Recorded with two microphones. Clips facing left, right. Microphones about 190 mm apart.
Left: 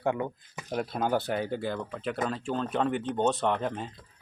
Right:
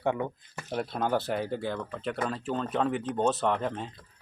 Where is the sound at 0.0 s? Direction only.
Centre (ahead or behind).